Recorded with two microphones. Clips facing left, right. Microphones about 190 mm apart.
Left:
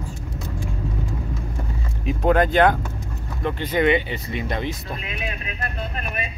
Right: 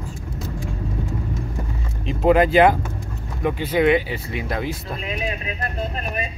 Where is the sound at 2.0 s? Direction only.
5° right (ahead or behind).